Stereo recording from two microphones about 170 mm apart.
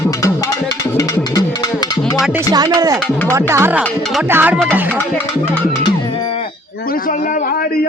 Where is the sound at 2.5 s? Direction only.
20° right (ahead or behind).